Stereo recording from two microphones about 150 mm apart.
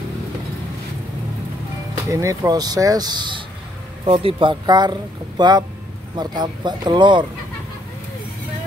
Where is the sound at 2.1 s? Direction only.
20° right (ahead or behind).